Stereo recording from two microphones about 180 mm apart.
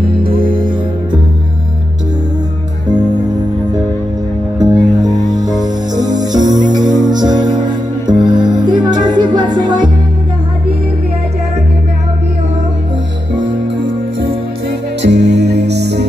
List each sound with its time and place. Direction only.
4.6 s music: 20° right (ahead or behind)
15.0 s music: 75° right (ahead or behind)